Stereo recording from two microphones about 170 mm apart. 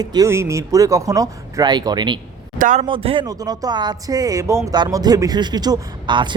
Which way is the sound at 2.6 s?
50° right (ahead or behind).